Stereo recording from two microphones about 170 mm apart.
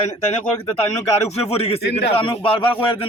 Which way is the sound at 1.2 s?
35° left (ahead or behind).